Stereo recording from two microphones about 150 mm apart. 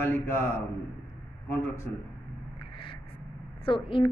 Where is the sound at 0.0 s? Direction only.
15° left (ahead or behind).